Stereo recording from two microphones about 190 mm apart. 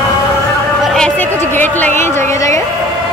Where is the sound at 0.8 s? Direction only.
5° left (ahead or behind).